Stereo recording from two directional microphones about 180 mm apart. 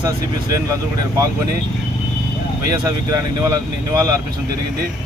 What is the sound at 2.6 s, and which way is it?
Speech, 20° right (ahead or behind).